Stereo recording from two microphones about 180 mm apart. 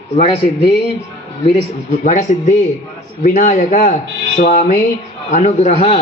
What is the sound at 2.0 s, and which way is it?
A man's voice, 40° left (ahead or behind).